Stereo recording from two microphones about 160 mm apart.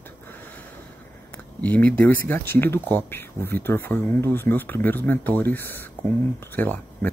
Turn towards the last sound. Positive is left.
turn(degrees=10)  # may be behind; listen again after turning